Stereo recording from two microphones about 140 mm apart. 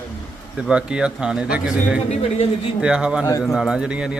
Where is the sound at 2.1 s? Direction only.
45° left (ahead or behind).